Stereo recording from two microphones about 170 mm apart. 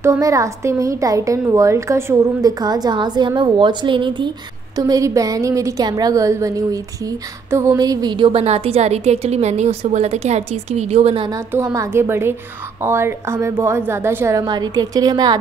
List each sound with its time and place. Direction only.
0.0 s a woman's voice: 15° right (ahead or behind); by 11.2 s 35° right (ahead or behind)
11.2 s a woman's voice: 20° right (ahead or behind)